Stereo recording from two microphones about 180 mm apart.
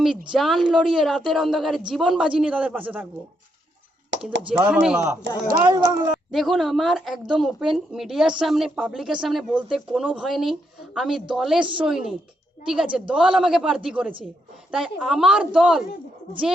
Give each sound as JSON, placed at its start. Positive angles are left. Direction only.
{"t": 0.3, "sound": "a woman's voice", "side_deg": 0}
{"t": 4.5, "sound": "a woman's voice", "side_deg": -5}
{"t": 5.6, "sound": "a woman's voice", "side_deg": -20}
{"t": 6.3, "sound": "a woman's voice", "side_deg": 0}